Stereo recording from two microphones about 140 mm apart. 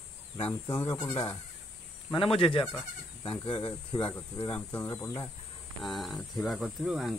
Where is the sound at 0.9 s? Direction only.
30° left (ahead or behind).